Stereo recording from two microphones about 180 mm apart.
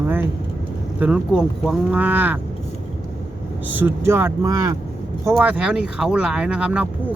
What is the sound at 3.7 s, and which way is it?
Speech, 10° right (ahead or behind).